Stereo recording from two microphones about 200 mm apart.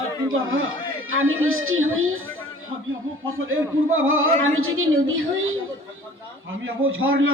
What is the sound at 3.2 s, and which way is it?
A man's voice, 90° right.